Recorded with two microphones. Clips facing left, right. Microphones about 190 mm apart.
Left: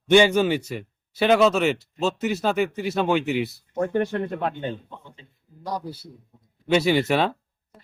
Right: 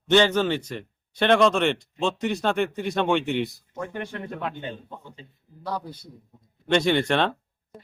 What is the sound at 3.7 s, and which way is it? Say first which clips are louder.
Speech: left 12 dB; 40° left (ahead or behind).